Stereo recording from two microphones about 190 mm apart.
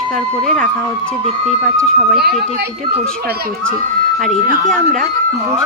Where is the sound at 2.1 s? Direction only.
55° right (ahead or behind).